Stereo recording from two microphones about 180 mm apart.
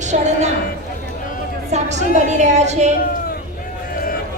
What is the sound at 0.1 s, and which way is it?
Speech, 40° right (ahead or behind).